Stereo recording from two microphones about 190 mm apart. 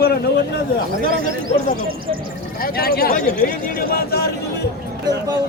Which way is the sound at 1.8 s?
50° right (ahead or behind).